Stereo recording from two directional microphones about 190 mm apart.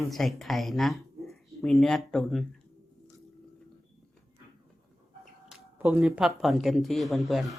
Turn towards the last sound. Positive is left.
turn(degrees=0)  # may be behind; listen again after turning